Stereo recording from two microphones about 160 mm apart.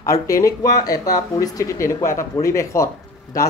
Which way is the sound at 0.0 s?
20° left (ahead or behind).